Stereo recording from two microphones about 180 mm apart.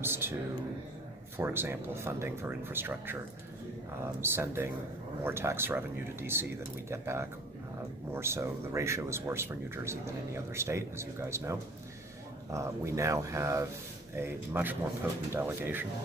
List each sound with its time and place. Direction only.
0.0 s speech: 10° right (ahead or behind)
1.4 s speech: 10° right (ahead or behind)
4.2 s speech: 10° right (ahead or behind)